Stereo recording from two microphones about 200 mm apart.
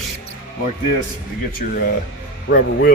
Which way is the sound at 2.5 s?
55° left (ahead or behind).